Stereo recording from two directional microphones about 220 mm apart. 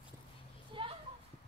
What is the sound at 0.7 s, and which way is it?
Children playing, 25° right (ahead or behind).